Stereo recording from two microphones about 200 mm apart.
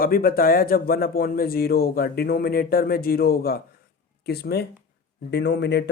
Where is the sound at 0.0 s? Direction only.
45° left (ahead or behind).